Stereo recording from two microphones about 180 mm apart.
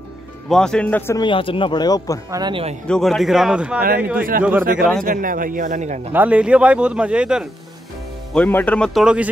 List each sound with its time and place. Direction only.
0.5 s speech: 5° left (ahead or behind)
1.1 s speech: 25° left (ahead or behind)
2.3 s speech: 25° right (ahead or behind)
2.9 s speech: centre (ahead or behind)
4.2 s a man's voice: 50° right (ahead or behind)
6.1 s a man's voice: 10° right (ahead or behind)
8.3 s speech: 10° left (ahead or behind)